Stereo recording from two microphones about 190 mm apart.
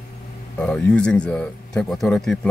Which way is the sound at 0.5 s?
5° left (ahead or behind).